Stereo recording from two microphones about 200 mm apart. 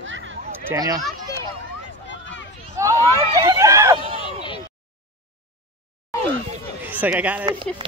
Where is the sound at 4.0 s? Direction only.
30° right (ahead or behind).